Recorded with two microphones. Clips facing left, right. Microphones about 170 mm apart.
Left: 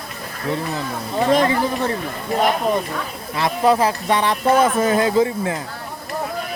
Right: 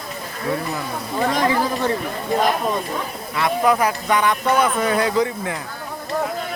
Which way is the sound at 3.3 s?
30° left (ahead or behind).